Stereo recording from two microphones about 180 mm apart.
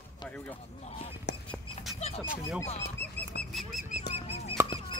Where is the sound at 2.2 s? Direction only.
5° right (ahead or behind).